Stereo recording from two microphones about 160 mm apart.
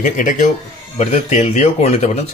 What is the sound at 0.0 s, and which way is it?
Speech, 55° left (ahead or behind).